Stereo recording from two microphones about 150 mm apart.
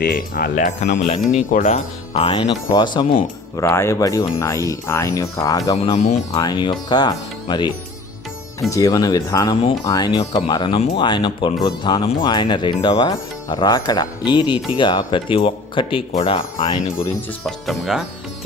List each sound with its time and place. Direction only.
0.0 s speech: 85° left; by 1.8 s 55° left (ahead or behind)
2.1 s speech: 35° left (ahead or behind)
3.6 s speech: 20° left (ahead or behind)
5.7 s speech: 40° left (ahead or behind)
8.7 s speech: 25° left (ahead or behind)
17.4 s speech: centre (ahead or behind)